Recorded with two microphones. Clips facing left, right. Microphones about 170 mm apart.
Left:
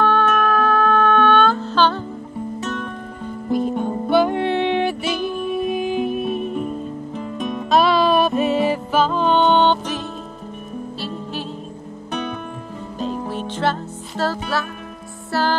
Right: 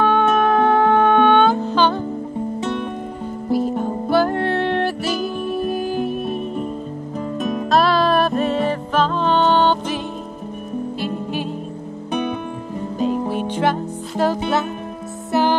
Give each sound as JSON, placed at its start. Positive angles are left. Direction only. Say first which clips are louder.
{"t": 0.0, "sound": "music", "louder": "right 2 dB", "side_deg": -15}
{"t": 2.6, "sound": "music", "louder": "right 3 dB", "side_deg": -25}
{"t": 3.4, "sound": "music", "louder": "right 1 dB", "side_deg": -5}
{"t": 11.0, "sound": "music", "louder": "right 4 dB", "side_deg": -15}